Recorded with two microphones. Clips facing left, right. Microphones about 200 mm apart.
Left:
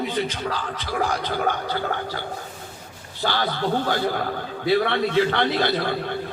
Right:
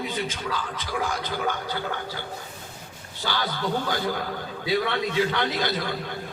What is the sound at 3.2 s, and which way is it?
Speech, 50° left (ahead or behind).